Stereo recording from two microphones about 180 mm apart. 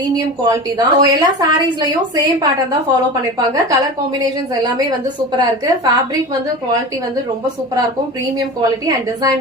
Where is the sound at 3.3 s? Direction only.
20° right (ahead or behind).